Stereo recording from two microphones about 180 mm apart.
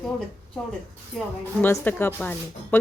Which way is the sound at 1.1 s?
Centre (ahead or behind).